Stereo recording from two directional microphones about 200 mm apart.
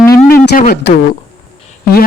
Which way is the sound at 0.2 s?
45° left (ahead or behind).